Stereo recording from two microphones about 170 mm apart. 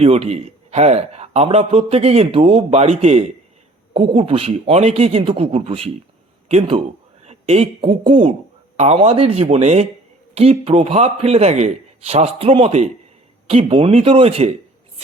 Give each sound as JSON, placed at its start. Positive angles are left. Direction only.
{"t": 0.0, "sound": "a man's voice", "side_deg": -40}
{"t": 7.3, "sound": "a sound", "side_deg": -40}
{"t": 8.7, "sound": "a man's voice", "side_deg": -40}